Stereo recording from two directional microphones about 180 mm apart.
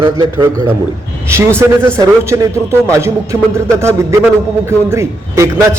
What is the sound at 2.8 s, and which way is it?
Speech, 15° right (ahead or behind).